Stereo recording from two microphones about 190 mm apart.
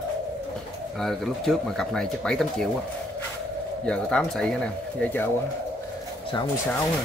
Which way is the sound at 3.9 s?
5° left (ahead or behind).